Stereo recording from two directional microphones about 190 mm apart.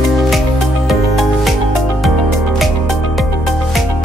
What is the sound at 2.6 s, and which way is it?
Music, centre (ahead or behind).